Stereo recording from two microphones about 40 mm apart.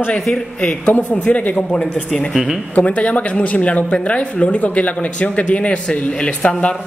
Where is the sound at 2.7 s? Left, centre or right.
Left.